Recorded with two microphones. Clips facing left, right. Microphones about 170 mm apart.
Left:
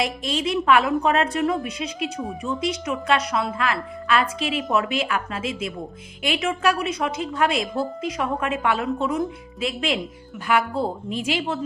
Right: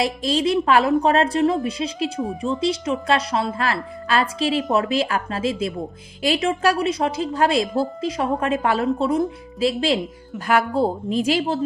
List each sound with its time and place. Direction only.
0.0 s a woman's voice: 35° right (ahead or behind)